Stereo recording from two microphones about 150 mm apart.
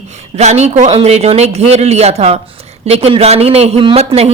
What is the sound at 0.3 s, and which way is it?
A woman's voice, 50° right (ahead or behind).